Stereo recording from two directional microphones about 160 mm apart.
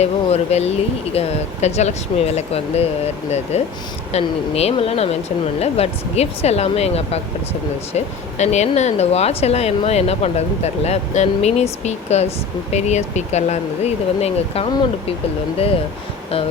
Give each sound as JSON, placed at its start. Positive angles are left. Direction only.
{"t": 0.0, "sound": "speech", "side_deg": 40}